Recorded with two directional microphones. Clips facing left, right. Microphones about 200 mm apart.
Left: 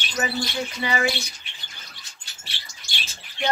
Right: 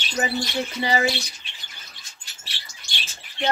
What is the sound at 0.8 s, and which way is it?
Speech, 35° right (ahead or behind).